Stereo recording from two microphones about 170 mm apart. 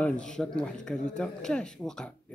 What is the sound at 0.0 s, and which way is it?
Speech, 5° left (ahead or behind).